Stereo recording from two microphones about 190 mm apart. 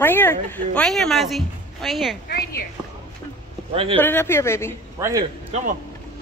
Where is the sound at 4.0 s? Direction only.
10° left (ahead or behind).